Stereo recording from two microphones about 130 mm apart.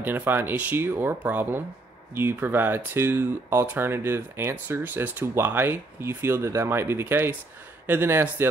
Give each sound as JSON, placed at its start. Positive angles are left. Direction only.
{"t": 0.0, "sound": "speech", "side_deg": -15}